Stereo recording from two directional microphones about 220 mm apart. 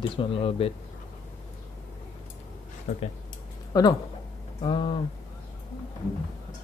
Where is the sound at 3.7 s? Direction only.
15° left (ahead or behind).